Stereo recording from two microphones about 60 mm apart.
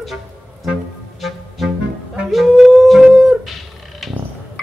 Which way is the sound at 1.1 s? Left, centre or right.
Centre.